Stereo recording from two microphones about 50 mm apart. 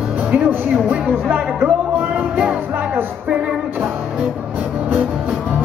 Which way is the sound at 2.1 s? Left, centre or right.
Right.